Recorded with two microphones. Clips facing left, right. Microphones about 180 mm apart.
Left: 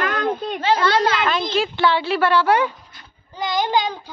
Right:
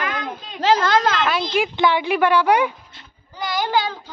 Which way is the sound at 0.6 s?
45° right (ahead or behind).